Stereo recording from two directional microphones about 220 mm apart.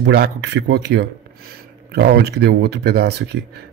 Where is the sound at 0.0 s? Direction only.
50° right (ahead or behind).